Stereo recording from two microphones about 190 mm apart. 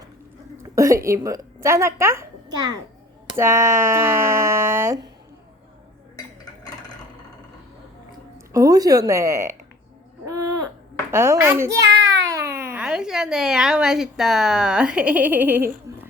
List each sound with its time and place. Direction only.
0.6 s a woman's voice: 15° right (ahead or behind)
8.5 s speech: 20° right (ahead or behind)
10.2 s a sound: 20° right (ahead or behind)
11.1 s speech: 15° right (ahead or behind)
12.3 s a sound: 15° right (ahead or behind)
12.7 s a woman's voice: 5° right (ahead or behind)